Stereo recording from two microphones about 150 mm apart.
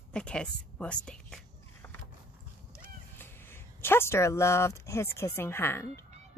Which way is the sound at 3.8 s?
15° left (ahead or behind).